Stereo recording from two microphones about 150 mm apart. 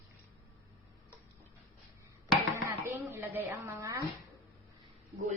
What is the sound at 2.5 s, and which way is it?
Dishes, 15° right (ahead or behind).